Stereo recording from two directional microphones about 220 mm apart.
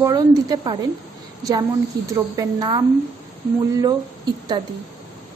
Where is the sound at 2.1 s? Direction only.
15° right (ahead or behind).